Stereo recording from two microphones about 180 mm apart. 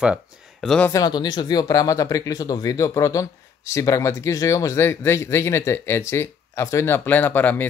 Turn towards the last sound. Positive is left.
turn(degrees=10)  # may be behind; listen again after turning